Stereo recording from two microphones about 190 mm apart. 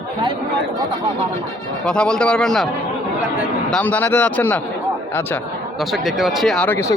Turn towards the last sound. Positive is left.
turn(degrees=10)  # may be behind; listen again after turning